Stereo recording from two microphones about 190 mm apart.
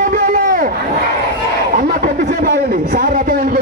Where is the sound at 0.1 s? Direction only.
50° right (ahead or behind).